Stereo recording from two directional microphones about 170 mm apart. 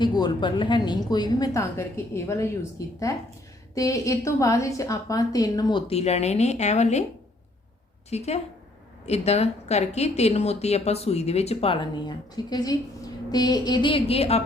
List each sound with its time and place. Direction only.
0.0 s a woman's voice: 25° left (ahead or behind)
5.9 s speech: 40° left (ahead or behind)
8.1 s a woman's voice: 40° left (ahead or behind)